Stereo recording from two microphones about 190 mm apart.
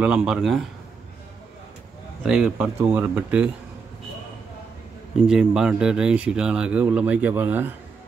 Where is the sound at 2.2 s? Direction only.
5° right (ahead or behind).